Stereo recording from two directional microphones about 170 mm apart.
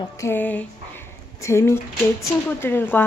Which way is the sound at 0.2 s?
10° left (ahead or behind).